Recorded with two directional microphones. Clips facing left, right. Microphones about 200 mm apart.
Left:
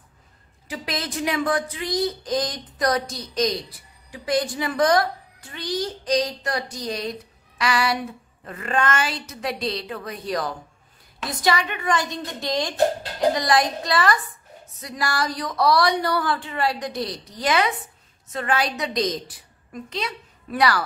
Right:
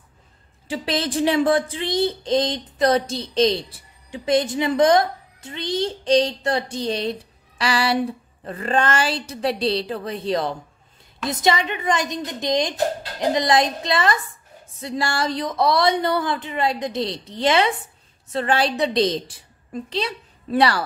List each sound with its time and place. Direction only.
0.7 s a woman's voice: 30° right (ahead or behind)